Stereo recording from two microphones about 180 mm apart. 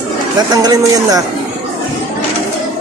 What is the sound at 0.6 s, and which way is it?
Speech, 20° right (ahead or behind).